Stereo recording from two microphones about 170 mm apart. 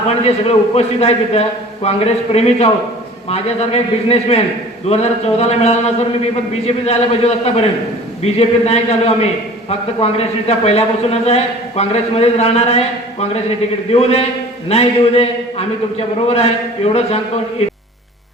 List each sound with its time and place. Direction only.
0.2 s a man's voice: 35° left (ahead or behind)